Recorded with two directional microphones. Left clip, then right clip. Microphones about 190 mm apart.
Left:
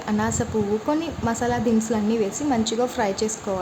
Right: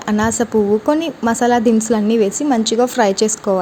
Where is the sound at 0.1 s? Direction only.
35° right (ahead or behind).